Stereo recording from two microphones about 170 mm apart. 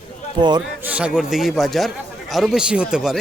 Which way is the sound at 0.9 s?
5° right (ahead or behind).